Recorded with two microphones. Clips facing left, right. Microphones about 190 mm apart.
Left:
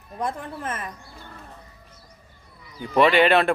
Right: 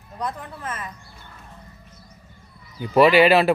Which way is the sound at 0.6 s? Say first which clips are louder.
Left 1 dB; 55° left (ahead or behind).